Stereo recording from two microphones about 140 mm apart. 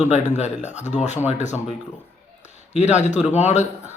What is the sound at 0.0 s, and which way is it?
A man's voice, 55° left (ahead or behind).